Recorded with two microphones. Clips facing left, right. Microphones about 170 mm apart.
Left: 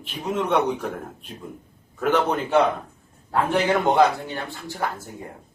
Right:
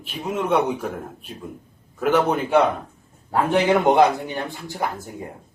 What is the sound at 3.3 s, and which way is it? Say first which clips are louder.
A man's voice: right 3 dB; 15° right (ahead or behind).